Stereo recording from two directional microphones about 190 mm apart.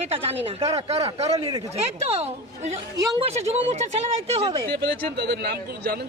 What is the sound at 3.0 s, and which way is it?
Speech, 20° right (ahead or behind).